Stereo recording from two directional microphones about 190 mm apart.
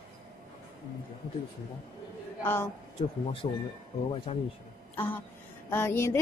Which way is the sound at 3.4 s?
30° left (ahead or behind).